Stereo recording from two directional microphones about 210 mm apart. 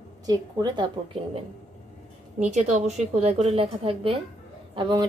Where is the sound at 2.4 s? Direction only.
35° right (ahead or behind).